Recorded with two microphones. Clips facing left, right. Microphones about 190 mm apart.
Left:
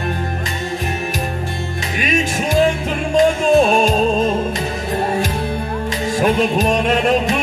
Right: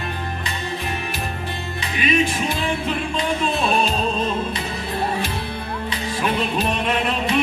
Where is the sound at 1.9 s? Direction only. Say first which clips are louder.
Even; 45° left (ahead or behind).